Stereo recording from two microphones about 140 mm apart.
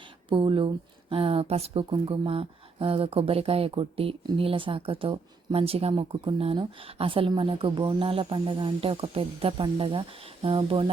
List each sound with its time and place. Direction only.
0.3 s speech: 35° right (ahead or behind)